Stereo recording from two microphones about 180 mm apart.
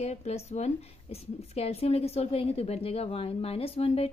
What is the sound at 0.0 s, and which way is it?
Speech, 35° left (ahead or behind).